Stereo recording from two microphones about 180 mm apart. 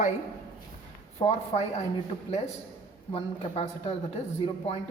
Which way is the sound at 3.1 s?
35° left (ahead or behind).